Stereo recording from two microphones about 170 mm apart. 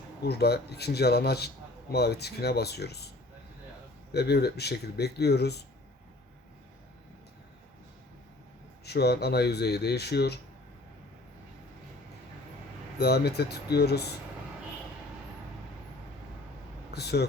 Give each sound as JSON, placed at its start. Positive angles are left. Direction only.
{"t": 0.2, "sound": "speech", "side_deg": 75}
{"t": 4.1, "sound": "speech", "side_deg": 70}
{"t": 8.8, "sound": "speech", "side_deg": 70}
{"t": 13.0, "sound": "speech", "side_deg": 70}
{"t": 16.9, "sound": "speech", "side_deg": 70}